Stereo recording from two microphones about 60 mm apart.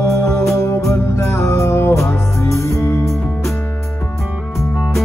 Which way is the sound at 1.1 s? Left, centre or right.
Left.